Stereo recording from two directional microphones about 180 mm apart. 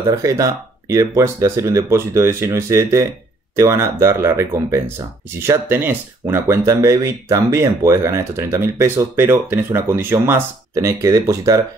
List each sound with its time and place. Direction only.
0.1 s speech: 15° right (ahead or behind)